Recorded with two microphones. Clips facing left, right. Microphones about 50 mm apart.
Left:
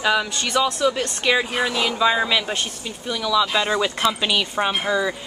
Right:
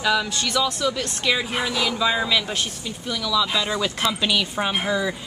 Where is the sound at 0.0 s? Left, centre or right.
Centre.